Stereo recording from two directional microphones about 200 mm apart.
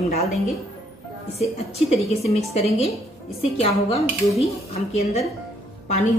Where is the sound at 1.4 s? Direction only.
30° left (ahead or behind).